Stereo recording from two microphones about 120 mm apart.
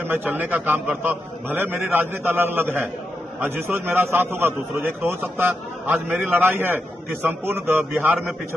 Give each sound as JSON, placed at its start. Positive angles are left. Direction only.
{"t": 0.0, "sound": "a man's voice", "side_deg": -15}